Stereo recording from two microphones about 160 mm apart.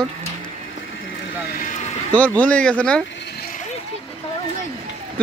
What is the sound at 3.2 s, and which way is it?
Vehicle, 90° left.